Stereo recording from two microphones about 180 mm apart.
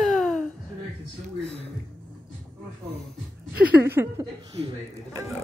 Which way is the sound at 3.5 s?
10° right (ahead or behind).